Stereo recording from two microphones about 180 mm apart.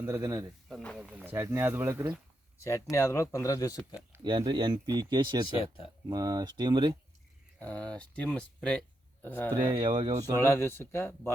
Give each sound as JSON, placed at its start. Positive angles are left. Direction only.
{"t": 0.0, "sound": "speech", "side_deg": -15}
{"t": 0.7, "sound": "speech", "side_deg": 5}
{"t": 0.9, "sound": "speech", "side_deg": -5}
{"t": 2.6, "sound": "speech", "side_deg": 15}
{"t": 4.2, "sound": "speech", "side_deg": -25}
{"t": 5.5, "sound": "speech", "side_deg": 30}
{"t": 6.1, "sound": "speech", "side_deg": -20}
{"t": 7.6, "sound": "speech", "side_deg": 5}
{"t": 9.6, "sound": "speech", "side_deg": -25}
{"t": 10.4, "sound": "speech", "side_deg": 15}